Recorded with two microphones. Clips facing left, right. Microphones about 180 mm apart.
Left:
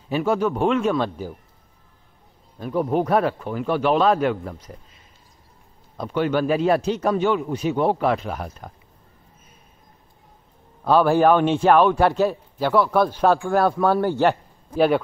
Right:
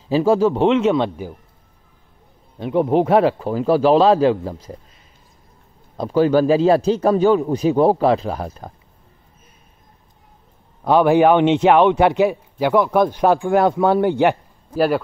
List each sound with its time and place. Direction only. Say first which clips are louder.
0.1 s a man's voice: right 6 dB; 30° right (ahead or behind)
2.6 s a man's voice: right 5 dB; 25° right (ahead or behind)
5.9 s a man's voice: right 7 dB; 35° right (ahead or behind)
10.8 s a man's voice: right 3 dB; 15° right (ahead or behind)